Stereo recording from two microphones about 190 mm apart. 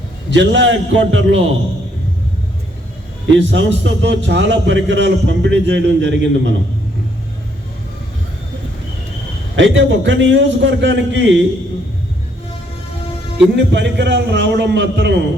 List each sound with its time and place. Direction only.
0.3 s a man's voice: 70° right (ahead or behind)
3.3 s a man's voice: 70° right (ahead or behind)
9.6 s a man's voice: 75° right (ahead or behind)
13.6 s a man's voice: 65° right (ahead or behind)